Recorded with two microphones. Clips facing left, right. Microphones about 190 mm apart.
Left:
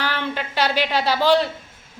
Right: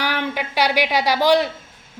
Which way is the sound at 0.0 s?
10° right (ahead or behind).